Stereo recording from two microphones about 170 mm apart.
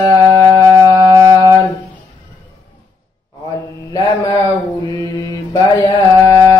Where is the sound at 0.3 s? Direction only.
25° right (ahead or behind).